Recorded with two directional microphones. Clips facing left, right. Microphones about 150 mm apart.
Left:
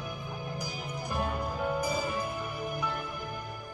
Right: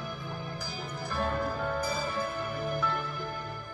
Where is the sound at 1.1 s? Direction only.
15° left (ahead or behind).